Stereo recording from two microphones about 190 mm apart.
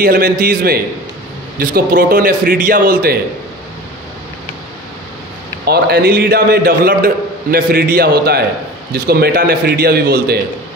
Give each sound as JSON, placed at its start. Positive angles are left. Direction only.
{"t": 0.0, "sound": "a man's voice", "side_deg": -50}
{"t": 5.7, "sound": "a man's voice", "side_deg": -55}